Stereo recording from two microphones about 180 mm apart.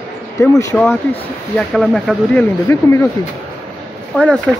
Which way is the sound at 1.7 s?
Centre (ahead or behind).